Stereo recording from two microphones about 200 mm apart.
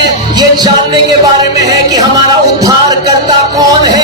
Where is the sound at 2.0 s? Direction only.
20° right (ahead or behind).